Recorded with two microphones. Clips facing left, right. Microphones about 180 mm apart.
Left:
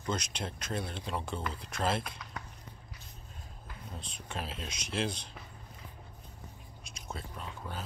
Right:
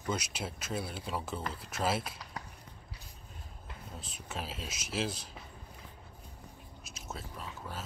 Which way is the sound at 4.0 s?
5° right (ahead or behind).